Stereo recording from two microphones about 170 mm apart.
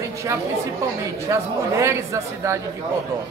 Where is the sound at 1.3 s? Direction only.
15° right (ahead or behind).